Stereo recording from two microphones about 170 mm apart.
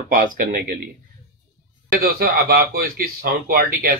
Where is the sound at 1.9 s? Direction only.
65° right (ahead or behind).